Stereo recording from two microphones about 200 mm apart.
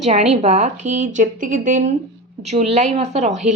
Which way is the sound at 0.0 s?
35° right (ahead or behind).